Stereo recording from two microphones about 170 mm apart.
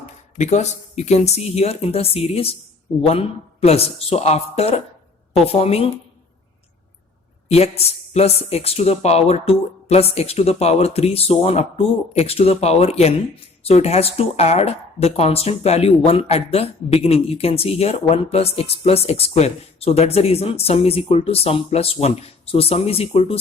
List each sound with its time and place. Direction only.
0.3 s a woman's voice: 40° left (ahead or behind)
7.4 s a woman's voice: 35° left (ahead or behind)